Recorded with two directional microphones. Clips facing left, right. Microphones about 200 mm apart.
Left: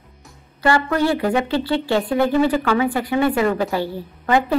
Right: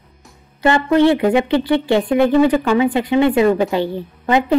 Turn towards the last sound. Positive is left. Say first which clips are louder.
# right 2 dB
turn(degrees=-20)  # may be behind; listen again after turning